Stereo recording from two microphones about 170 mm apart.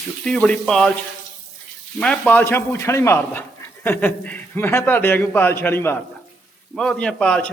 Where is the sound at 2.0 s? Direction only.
5° left (ahead or behind).